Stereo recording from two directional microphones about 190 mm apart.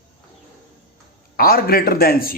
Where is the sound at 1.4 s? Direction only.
50° left (ahead or behind).